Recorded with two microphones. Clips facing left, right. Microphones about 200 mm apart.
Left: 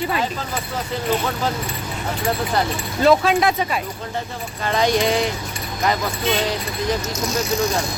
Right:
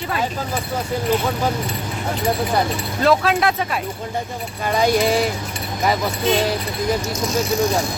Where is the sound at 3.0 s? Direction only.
Centre (ahead or behind).